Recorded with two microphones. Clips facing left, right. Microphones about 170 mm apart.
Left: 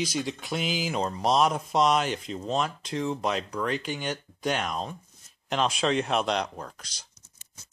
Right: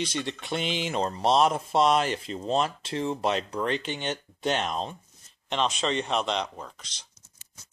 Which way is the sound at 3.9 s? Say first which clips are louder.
Even; 25° right (ahead or behind).